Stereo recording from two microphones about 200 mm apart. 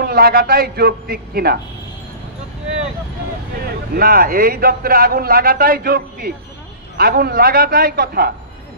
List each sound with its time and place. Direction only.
0.0 s a man's voice: 50° right (ahead or behind)
3.6 s a man's voice: 45° right (ahead or behind)